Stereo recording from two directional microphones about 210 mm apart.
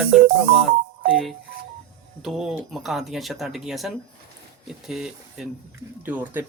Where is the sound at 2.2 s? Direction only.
Centre (ahead or behind).